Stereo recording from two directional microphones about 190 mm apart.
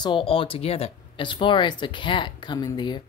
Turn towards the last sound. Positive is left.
turn(degrees=25)  # may be behind; listen again after turning